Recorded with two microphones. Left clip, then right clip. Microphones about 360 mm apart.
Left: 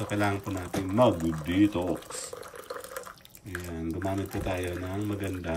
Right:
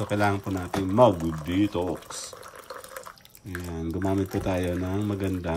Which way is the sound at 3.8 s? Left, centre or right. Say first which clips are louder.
Right 5 dB; right.